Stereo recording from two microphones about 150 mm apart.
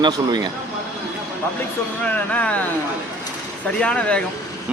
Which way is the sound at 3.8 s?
5° left (ahead or behind).